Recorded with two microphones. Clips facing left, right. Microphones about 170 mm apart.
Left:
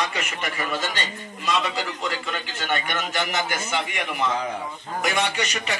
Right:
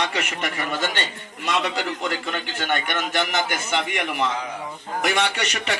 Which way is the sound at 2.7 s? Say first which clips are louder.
Right 2 dB; 60° right (ahead or behind).